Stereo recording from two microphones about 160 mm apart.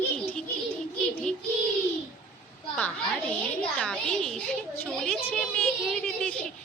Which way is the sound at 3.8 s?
5° left (ahead or behind).